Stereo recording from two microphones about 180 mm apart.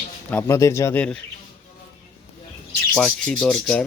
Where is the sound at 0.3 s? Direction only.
15° left (ahead or behind).